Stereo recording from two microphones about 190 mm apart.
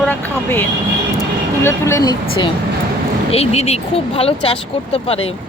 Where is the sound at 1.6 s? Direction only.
15° left (ahead or behind).